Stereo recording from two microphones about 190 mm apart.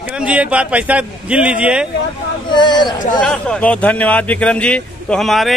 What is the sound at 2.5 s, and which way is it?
Speech, 25° left (ahead or behind).